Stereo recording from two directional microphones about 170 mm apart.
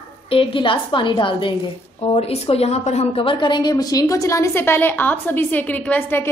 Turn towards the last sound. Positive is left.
turn(degrees=10)  # may be behind; listen again after turning